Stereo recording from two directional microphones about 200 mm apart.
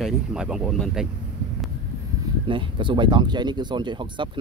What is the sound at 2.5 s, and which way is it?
Speech, 25° right (ahead or behind).